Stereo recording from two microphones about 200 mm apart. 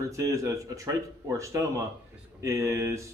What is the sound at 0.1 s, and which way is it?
Speech, 15° right (ahead or behind).